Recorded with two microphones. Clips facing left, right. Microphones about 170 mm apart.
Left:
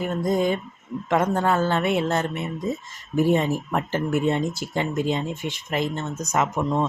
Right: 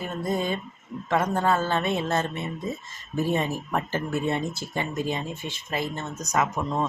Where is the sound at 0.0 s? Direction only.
15° left (ahead or behind).